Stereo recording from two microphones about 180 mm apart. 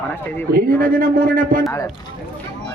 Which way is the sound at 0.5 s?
50° right (ahead or behind).